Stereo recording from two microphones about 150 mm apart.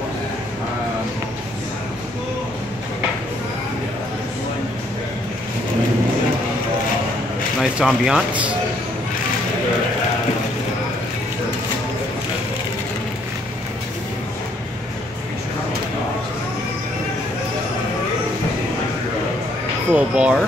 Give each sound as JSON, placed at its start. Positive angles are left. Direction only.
{"t": 7.6, "sound": "speech", "side_deg": -5}
{"t": 19.9, "sound": "speech", "side_deg": -10}